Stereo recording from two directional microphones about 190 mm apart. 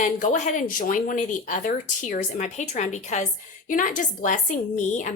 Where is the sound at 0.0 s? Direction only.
40° left (ahead or behind).